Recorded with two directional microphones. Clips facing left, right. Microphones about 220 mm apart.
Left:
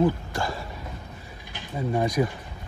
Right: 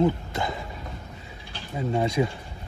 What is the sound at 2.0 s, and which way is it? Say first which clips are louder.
Speech: even; 25° right (ahead or behind).